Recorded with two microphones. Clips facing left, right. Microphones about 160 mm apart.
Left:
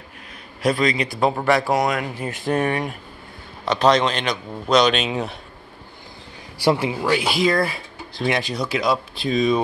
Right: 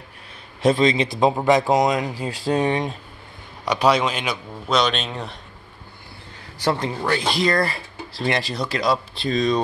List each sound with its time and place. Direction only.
0.6 s speech: 25° right (ahead or behind)
3.6 s speech: 10° right (ahead or behind); by 5.4 s 5° left (ahead or behind)
6.6 s speech: 10° left (ahead or behind)